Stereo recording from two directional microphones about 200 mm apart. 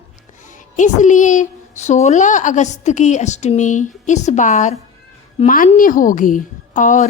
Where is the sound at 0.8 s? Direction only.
40° left (ahead or behind).